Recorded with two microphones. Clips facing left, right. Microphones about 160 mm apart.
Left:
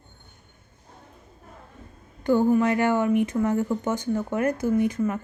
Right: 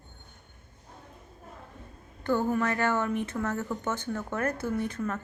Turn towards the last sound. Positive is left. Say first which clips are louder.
# left 8 dB
turn(degrees=10)  # may be behind; listen again after turning